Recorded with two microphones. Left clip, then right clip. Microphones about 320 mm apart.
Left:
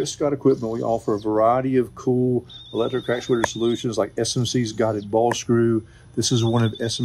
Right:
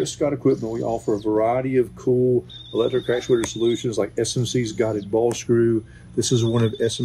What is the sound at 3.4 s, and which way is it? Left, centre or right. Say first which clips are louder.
Speech: right 1 dB; centre.